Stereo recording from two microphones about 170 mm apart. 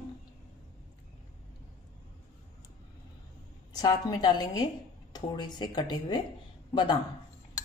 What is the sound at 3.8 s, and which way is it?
Speech, 25° left (ahead or behind).